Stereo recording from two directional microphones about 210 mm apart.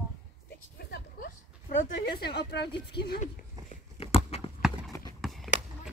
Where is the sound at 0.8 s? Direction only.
45° left (ahead or behind).